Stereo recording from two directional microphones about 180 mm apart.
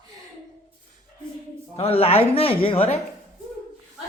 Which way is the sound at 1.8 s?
35° left (ahead or behind).